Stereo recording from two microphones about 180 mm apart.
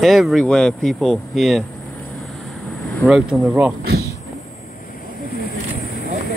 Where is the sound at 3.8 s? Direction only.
60° right (ahead or behind).